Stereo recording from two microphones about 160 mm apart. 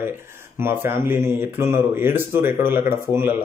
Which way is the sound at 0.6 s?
15° right (ahead or behind).